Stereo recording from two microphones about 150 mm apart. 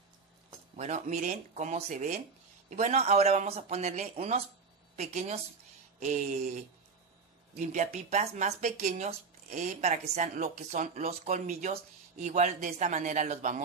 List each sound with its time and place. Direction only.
0.7 s speech: 50° right (ahead or behind)